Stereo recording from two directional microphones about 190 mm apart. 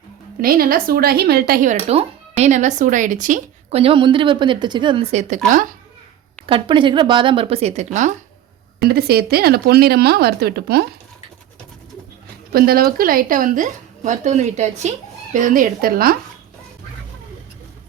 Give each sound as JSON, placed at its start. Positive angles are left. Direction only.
{"t": 0.4, "sound": "a woman's voice", "side_deg": -50}
{"t": 1.9, "sound": "speech", "side_deg": -30}
{"t": 6.4, "sound": "speech", "side_deg": -25}
{"t": 8.8, "sound": "speech", "side_deg": -55}
{"t": 12.5, "sound": "a woman's voice", "side_deg": -50}